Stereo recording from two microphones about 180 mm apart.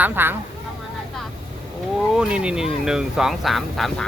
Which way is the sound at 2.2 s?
5° right (ahead or behind).